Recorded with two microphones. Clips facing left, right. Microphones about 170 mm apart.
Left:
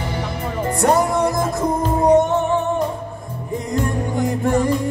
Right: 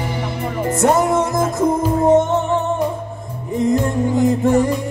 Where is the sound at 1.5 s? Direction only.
20° right (ahead or behind).